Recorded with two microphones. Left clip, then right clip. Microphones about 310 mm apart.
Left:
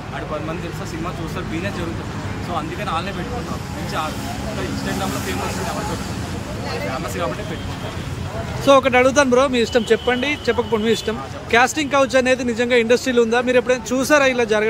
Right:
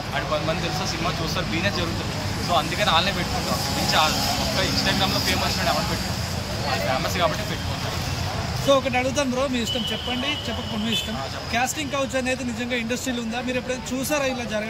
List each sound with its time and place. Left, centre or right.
2.8 s speech: centre
8.6 s speech: centre
11.5 s speech: centre